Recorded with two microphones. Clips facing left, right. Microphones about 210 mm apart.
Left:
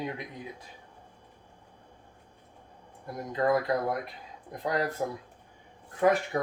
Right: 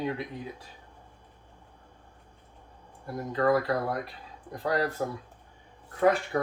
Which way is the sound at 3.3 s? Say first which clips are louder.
Right 1 dB; 20° left (ahead or behind).